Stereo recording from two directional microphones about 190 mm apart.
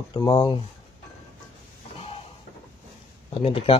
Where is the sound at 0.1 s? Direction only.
25° left (ahead or behind).